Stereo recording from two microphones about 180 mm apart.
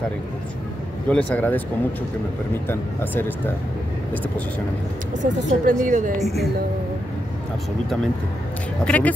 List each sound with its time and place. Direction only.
1.0 s speech: 10° left (ahead or behind)
2.7 s speech: 10° left (ahead or behind)
5.1 s speech: 45° right (ahead or behind)
8.8 s speech: 10° left (ahead or behind)